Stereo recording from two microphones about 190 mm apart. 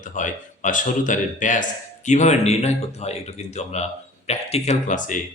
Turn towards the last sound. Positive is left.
turn(degrees=40)  # may be behind; listen again after turning